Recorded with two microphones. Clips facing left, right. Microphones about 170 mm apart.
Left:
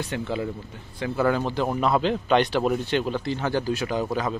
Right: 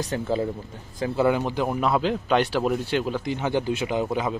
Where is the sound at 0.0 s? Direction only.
40° right (ahead or behind).